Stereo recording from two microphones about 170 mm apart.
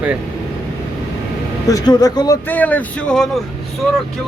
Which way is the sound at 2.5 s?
10° left (ahead or behind).